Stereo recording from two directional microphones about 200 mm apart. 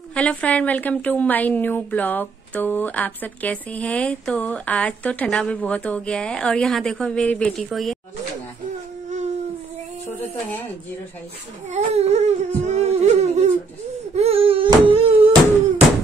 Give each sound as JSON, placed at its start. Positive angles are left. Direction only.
{"t": 0.1, "sound": "a woman's voice", "side_deg": 5}
{"t": 11.7, "sound": "a sound", "side_deg": -35}
{"t": 14.1, "sound": "baby cry", "side_deg": -30}